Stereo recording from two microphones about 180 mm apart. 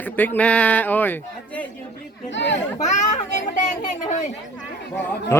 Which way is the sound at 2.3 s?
90° left.